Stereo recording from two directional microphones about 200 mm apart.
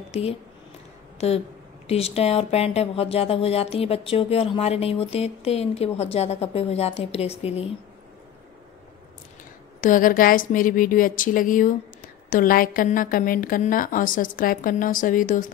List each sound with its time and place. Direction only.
0.1 s speech: 30° left (ahead or behind)
1.1 s a sound: 30° left (ahead or behind)
1.9 s speech: 30° left (ahead or behind)
9.8 s speech: 40° left (ahead or behind)